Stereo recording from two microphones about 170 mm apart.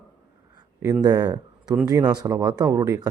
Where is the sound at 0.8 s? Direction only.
20° right (ahead or behind).